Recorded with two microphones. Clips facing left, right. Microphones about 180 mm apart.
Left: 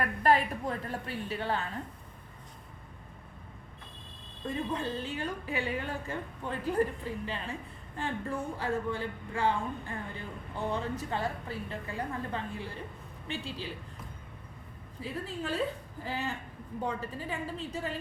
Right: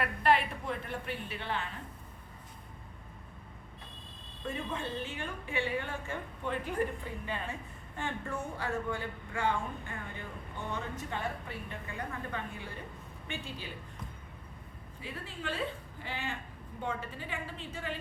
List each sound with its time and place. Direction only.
0.0 s a woman's voice: 40° left (ahead or behind)
4.7 s a woman's voice: 35° left (ahead or behind)
15.0 s a woman's voice: 40° left (ahead or behind)